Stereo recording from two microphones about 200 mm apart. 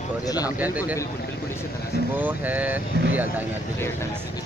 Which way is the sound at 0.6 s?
10° right (ahead or behind).